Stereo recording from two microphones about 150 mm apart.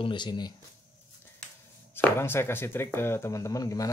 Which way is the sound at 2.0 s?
15° left (ahead or behind).